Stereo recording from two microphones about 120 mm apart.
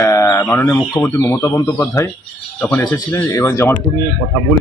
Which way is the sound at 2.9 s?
20° left (ahead or behind).